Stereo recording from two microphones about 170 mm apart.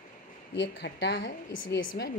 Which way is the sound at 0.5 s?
90° left.